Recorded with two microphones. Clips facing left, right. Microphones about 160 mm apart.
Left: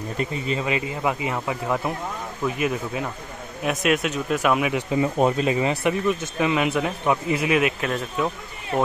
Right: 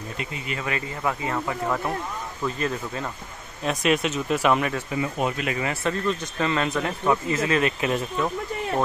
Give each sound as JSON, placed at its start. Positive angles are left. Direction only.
{"t": 0.5, "sound": "speech", "side_deg": 20}
{"t": 4.9, "sound": "speech", "side_deg": 30}